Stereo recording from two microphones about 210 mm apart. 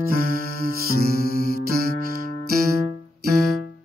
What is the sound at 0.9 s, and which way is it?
Music, 45° right (ahead or behind).